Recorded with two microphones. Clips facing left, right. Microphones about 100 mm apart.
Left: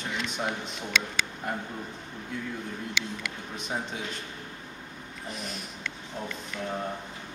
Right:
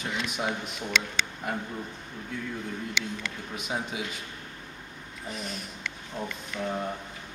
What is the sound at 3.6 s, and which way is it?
Speech, 5° right (ahead or behind).